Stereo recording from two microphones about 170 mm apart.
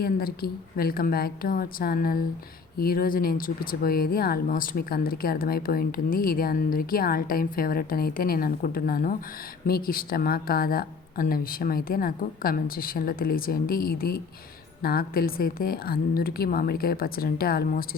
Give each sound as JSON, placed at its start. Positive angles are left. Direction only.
{"t": 0.0, "sound": "speech", "side_deg": 65}